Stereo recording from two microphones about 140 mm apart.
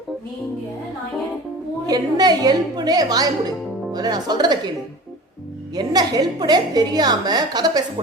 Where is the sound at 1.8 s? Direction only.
30° right (ahead or behind).